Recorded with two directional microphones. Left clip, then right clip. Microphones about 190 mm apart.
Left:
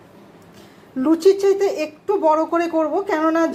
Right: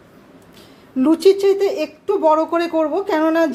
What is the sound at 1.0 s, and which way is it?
A woman's voice, 15° right (ahead or behind).